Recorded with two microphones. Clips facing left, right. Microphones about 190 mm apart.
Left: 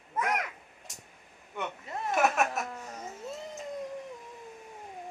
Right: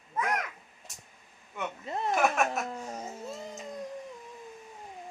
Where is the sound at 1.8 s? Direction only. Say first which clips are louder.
Right 4 dB; 25° right (ahead or behind).